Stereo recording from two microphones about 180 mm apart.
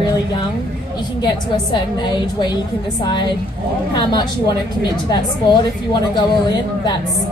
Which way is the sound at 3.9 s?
25° left (ahead or behind).